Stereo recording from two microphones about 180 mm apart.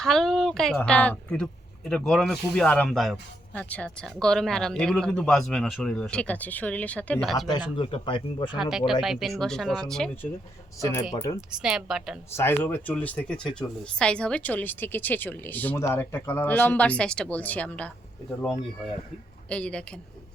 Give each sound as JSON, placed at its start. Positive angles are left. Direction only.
{"t": 0.0, "sound": "speech", "side_deg": 5}
{"t": 7.8, "sound": "speech", "side_deg": 30}
{"t": 8.5, "sound": "speech", "side_deg": 0}
{"t": 11.1, "sound": "speech", "side_deg": 20}
{"t": 11.3, "sound": "speech", "side_deg": -5}
{"t": 12.3, "sound": "speech", "side_deg": 15}
{"t": 19.5, "sound": "speech", "side_deg": 5}